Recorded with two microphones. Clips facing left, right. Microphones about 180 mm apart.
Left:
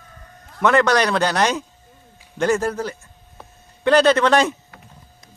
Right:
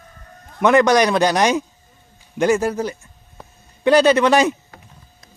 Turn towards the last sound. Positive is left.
turn(degrees=-10)  # may be behind; listen again after turning